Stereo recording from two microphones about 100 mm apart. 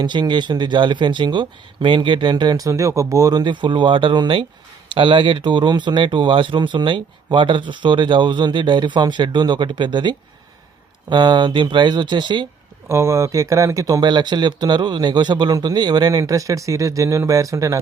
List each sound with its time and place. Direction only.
0.0 s speech: 50° right (ahead or behind)
12.9 s speech: 30° right (ahead or behind)
14.0 s speech: 50° right (ahead or behind)